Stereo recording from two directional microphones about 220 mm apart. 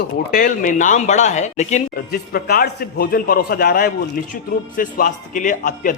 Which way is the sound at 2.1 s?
45° left (ahead or behind).